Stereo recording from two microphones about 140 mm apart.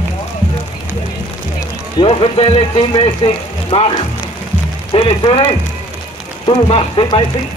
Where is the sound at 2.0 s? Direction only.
40° left (ahead or behind).